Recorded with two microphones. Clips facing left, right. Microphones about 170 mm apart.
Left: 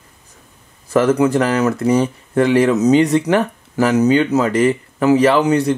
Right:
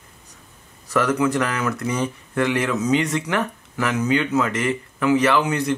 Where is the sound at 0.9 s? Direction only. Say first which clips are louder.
Left 6 dB; 30° left (ahead or behind).